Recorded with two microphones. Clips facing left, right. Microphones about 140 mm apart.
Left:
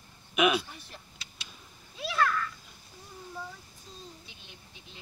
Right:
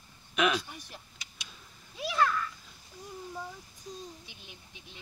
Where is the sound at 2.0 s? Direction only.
15° right (ahead or behind).